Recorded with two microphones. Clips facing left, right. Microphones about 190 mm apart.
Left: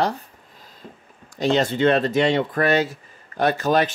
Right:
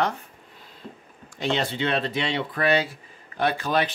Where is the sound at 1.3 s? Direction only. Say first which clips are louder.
Left 6 dB; 40° left (ahead or behind).